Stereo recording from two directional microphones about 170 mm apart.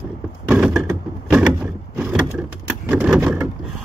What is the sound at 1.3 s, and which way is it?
Door, 5° right (ahead or behind).